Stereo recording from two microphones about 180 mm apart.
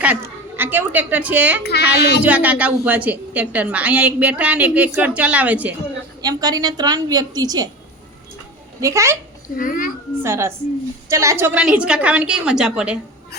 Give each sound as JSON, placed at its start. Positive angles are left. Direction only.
{"t": 0.0, "sound": "a woman's voice", "side_deg": -10}
{"t": 2.0, "sound": "speech", "side_deg": 65}
{"t": 2.2, "sound": "a woman's voice", "side_deg": -10}
{"t": 6.2, "sound": "a woman's voice", "side_deg": -20}
{"t": 8.8, "sound": "a woman's voice", "side_deg": -15}
{"t": 9.6, "sound": "a child's voice", "side_deg": 50}
{"t": 10.2, "sound": "a woman's voice", "side_deg": -15}